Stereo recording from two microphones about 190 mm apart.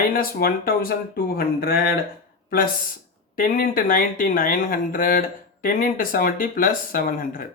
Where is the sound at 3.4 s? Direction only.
50° left (ahead or behind).